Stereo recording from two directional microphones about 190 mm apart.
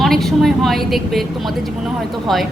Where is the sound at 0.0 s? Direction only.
Centre (ahead or behind).